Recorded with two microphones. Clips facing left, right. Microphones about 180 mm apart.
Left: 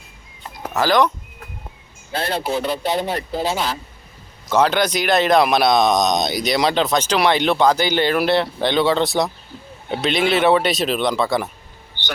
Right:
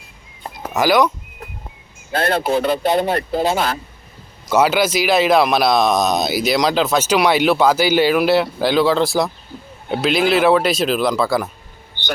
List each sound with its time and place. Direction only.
0.7 s speech: 10° right (ahead or behind)
2.1 s speech: 50° right (ahead or behind)
4.4 s speech: 5° right (ahead or behind)